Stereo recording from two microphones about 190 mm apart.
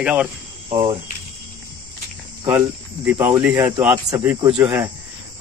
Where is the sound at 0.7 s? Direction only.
30° right (ahead or behind).